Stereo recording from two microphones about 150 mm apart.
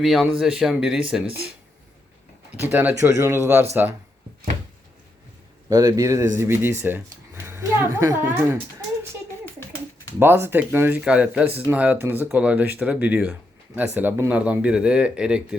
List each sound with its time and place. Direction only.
0.0 s speech: centre (ahead or behind)
2.5 s speech: 15° right (ahead or behind)
5.6 s speech: 20° right (ahead or behind)
10.2 s speech: 15° right (ahead or behind)